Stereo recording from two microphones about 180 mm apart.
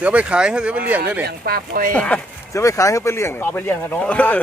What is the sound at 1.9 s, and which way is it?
Speech, 10° left (ahead or behind).